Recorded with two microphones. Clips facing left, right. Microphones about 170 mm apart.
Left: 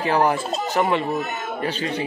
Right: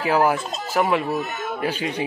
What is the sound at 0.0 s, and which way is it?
Speech, 5° right (ahead or behind).